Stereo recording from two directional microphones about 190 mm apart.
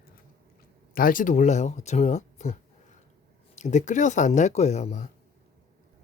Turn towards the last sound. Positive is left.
turn(degrees=40)  # may be behind; listen again after turning